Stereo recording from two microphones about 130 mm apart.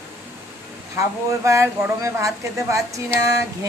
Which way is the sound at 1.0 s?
20° right (ahead or behind).